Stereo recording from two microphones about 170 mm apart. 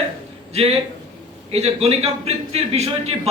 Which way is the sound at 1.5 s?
35° right (ahead or behind).